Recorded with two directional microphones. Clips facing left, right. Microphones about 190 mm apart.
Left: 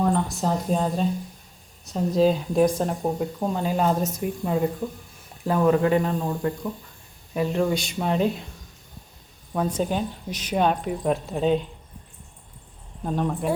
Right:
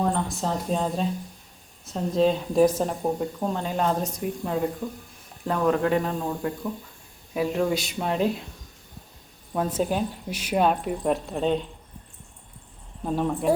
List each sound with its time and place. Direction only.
0.0 s a sound: centre (ahead or behind)
1.8 s speech: centre (ahead or behind)
9.5 s speech: 5° right (ahead or behind)
13.1 s speech: centre (ahead or behind)